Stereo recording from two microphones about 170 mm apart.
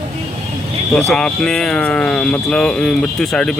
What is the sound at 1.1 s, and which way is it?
Speech, 5° left (ahead or behind).